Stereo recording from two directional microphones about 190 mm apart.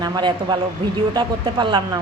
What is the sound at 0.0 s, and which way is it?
A man's voice, 25° right (ahead or behind).